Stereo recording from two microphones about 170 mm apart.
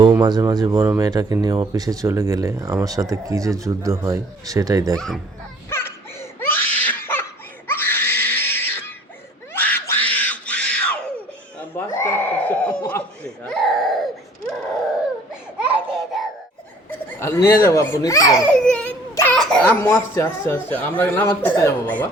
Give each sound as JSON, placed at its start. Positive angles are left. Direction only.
{"t": 0.2, "sound": "speech", "side_deg": -25}
{"t": 4.9, "sound": "speech", "side_deg": 0}
{"t": 5.6, "sound": "laughter", "side_deg": 15}
{"t": 7.7, "sound": "screaming", "side_deg": 15}
{"t": 9.5, "sound": "a sound", "side_deg": 10}
{"t": 12.9, "sound": "baby cry", "side_deg": 5}
{"t": 15.5, "sound": "a sound", "side_deg": -5}
{"t": 17.2, "sound": "speech", "side_deg": 15}
{"t": 18.5, "sound": "baby cry", "side_deg": 5}
{"t": 19.3, "sound": "speech", "side_deg": 5}